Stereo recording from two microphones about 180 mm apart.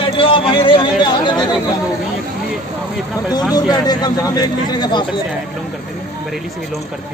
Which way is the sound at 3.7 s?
20° left (ahead or behind).